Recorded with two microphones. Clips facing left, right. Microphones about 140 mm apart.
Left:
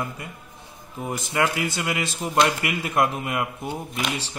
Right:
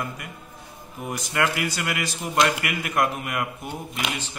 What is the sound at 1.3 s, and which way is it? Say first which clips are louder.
Speech: left 1 dB; 20° left (ahead or behind).